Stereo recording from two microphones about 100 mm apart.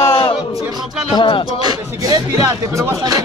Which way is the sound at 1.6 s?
40° right (ahead or behind).